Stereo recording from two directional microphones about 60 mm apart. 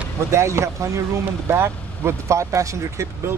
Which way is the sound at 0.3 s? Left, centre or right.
Right.